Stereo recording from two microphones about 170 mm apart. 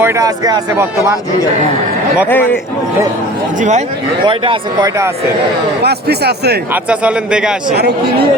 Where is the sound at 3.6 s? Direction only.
45° right (ahead or behind).